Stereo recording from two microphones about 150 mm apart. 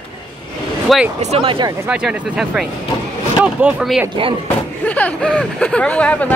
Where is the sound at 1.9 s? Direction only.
5° right (ahead or behind).